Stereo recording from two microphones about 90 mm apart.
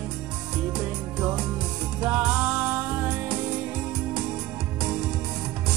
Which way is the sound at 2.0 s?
15° right (ahead or behind).